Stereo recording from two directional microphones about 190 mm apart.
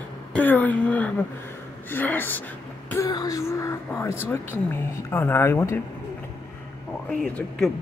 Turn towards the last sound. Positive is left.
turn(degrees=5)  # may be behind; listen again after turning